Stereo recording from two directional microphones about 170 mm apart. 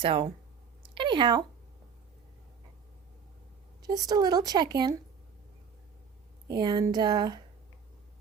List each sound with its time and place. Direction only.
0.0 s speech: 30° right (ahead or behind)
0.8 s a sound: 30° right (ahead or behind)
3.8 s speech: 20° right (ahead or behind)
6.5 s speech: 25° right (ahead or behind)